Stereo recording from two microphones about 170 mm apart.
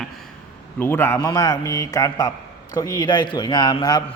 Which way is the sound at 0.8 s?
15° left (ahead or behind).